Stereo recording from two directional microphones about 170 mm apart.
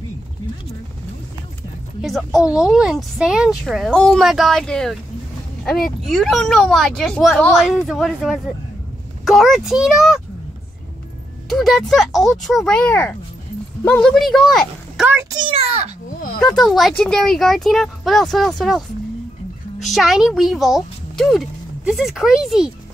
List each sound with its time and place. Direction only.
2.0 s speech: centre (ahead or behind)
6.0 s speech: centre (ahead or behind)
11.4 s speech: centre (ahead or behind)
15.0 s a child's voice: 15° right (ahead or behind)
15.3 s a sound: 30° right (ahead or behind)
16.6 s speech: centre (ahead or behind)